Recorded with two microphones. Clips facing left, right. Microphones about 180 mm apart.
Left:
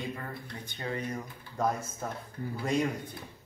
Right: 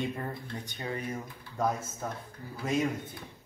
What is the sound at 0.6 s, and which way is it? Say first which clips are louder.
Speech: left 2 dB; 15° right (ahead or behind).